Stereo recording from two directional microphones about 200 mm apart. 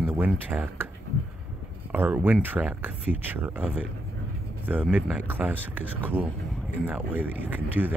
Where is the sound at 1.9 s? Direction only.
10° right (ahead or behind).